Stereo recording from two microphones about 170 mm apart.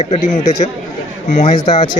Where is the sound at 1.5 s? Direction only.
25° left (ahead or behind).